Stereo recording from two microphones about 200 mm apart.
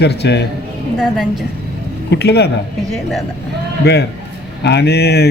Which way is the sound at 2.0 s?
55° left (ahead or behind).